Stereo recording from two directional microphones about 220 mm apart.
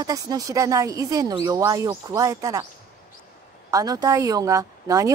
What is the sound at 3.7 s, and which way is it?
Speech, 15° right (ahead or behind).